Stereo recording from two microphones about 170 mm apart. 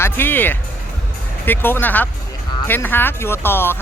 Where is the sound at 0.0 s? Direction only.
10° left (ahead or behind).